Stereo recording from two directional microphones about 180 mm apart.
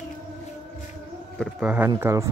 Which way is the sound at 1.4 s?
5° right (ahead or behind).